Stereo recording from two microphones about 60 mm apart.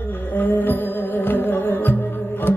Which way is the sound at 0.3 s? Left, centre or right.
Left.